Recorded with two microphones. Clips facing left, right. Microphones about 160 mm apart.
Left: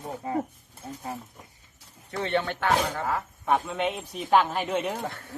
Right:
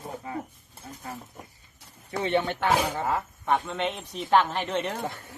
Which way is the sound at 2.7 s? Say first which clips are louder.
Even; 5° right (ahead or behind).